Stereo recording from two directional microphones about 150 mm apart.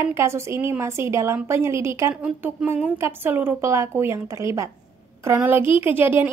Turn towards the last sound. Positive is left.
turn(degrees=-15)  # may be behind; listen again after turning